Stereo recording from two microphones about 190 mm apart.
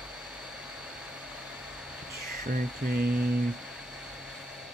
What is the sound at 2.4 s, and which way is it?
Speech, 50° right (ahead or behind).